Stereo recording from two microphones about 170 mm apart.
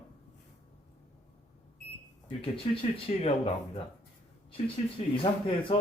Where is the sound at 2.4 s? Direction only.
30° left (ahead or behind).